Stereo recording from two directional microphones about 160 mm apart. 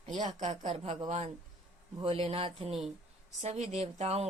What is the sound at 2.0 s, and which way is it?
A woman's voice, 35° right (ahead or behind).